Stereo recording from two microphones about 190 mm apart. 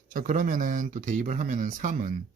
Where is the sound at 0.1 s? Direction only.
45° right (ahead or behind).